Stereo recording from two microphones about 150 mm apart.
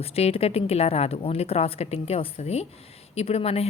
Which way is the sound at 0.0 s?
40° left (ahead or behind).